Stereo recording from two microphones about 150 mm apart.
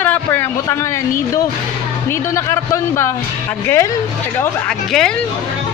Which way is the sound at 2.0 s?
15° left (ahead or behind).